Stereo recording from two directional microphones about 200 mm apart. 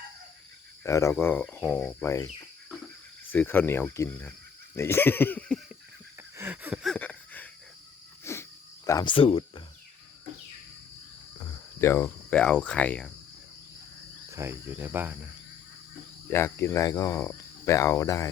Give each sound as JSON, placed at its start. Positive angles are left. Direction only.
{"t": 0.9, "sound": "speech", "side_deg": 15}
{"t": 3.3, "sound": "speech", "side_deg": 10}
{"t": 6.1, "sound": "a sound", "side_deg": -10}
{"t": 6.9, "sound": "a sound", "side_deg": 5}
{"t": 8.2, "sound": "cricket", "side_deg": 15}
{"t": 8.9, "sound": "speech", "side_deg": 20}
{"t": 11.3, "sound": "speech", "side_deg": 15}
{"t": 14.3, "sound": "cricket", "side_deg": -15}
{"t": 16.3, "sound": "speech", "side_deg": 15}